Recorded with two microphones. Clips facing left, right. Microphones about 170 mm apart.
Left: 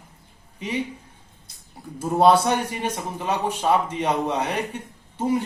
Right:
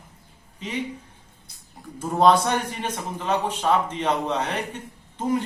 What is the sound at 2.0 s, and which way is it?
A man's voice, 10° left (ahead or behind).